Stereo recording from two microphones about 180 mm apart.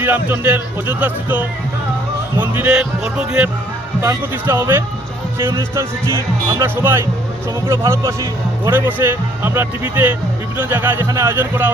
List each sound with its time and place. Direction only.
0.0 s speech: 10° right (ahead or behind)
4.0 s speech: 15° right (ahead or behind)